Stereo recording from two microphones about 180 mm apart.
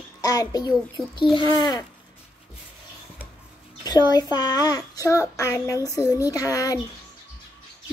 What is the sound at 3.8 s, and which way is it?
Child singing, 20° left (ahead or behind).